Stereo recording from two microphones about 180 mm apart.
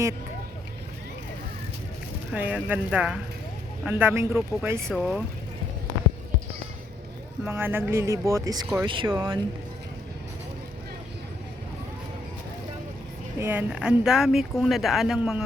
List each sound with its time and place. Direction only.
2.3 s speech: 10° right (ahead or behind)
4.9 s speech: centre (ahead or behind)
7.4 s speech: 10° right (ahead or behind)
13.4 s speech: 10° right (ahead or behind)